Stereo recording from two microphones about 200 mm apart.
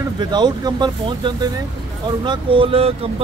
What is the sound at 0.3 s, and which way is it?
Speech, 20° right (ahead or behind).